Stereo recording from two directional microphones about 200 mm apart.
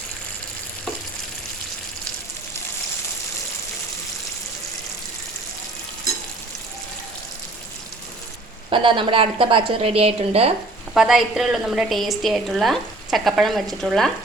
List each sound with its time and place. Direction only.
8.7 s a woman's voice: 25° right (ahead or behind)
10.9 s a woman's voice: centre (ahead or behind)